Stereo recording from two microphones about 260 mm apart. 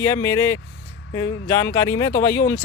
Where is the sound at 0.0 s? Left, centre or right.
Centre.